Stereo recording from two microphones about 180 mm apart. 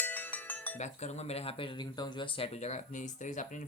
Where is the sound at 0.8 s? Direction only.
40° left (ahead or behind).